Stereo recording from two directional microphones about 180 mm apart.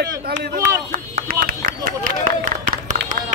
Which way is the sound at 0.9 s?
55° right (ahead or behind).